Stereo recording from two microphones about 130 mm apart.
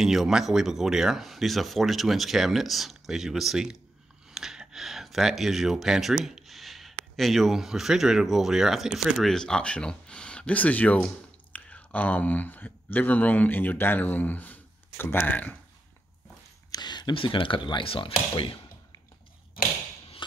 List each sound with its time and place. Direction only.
0.0 s speech: centre (ahead or behind)
4.3 s a sound: 5° right (ahead or behind)
7.2 s speech: centre (ahead or behind)
16.7 s speech: 35° left (ahead or behind)